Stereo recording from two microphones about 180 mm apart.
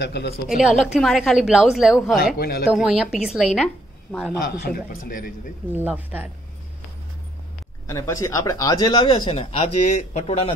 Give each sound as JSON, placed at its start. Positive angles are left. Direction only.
{"t": 0.0, "sound": "speech", "side_deg": 75}
{"t": 0.5, "sound": "a woman's voice", "side_deg": 0}
{"t": 2.3, "sound": "a man's voice", "side_deg": 60}
{"t": 2.7, "sound": "a woman's voice", "side_deg": 0}
{"t": 4.4, "sound": "a man's voice", "side_deg": 55}
{"t": 5.7, "sound": "speech", "side_deg": -10}
{"t": 7.8, "sound": "speech", "side_deg": 15}